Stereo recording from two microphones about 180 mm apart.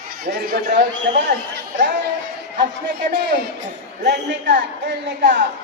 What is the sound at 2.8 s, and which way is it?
Speech, 60° right (ahead or behind).